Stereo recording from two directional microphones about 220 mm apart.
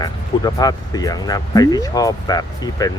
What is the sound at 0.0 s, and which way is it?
Speech, 15° left (ahead or behind).